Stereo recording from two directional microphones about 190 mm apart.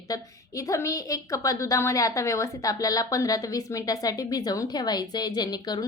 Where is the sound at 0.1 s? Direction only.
15° left (ahead or behind).